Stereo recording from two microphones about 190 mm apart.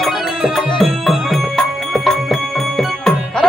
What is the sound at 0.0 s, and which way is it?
Music, centre (ahead or behind).